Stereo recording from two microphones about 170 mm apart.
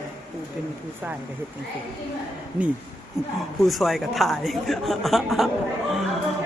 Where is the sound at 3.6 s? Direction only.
Centre (ahead or behind).